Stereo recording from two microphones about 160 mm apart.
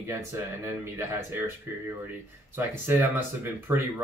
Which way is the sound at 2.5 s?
15° right (ahead or behind).